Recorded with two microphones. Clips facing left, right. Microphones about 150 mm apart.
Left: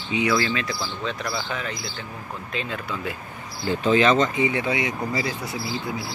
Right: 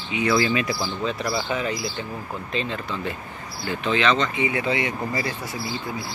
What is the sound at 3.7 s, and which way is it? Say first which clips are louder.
Speech: left 3 dB; 40° left (ahead or behind).